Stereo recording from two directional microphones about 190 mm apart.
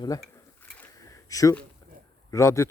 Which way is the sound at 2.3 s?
15° left (ahead or behind).